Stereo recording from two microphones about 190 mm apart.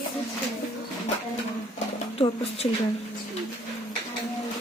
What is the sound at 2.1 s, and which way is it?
Speech, 30° left (ahead or behind).